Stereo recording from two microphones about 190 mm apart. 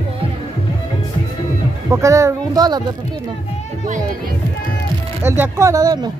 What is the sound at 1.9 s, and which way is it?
Speech, 15° right (ahead or behind).